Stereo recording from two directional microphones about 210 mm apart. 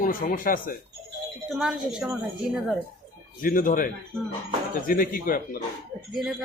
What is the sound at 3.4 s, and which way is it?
Speech, 40° left (ahead or behind).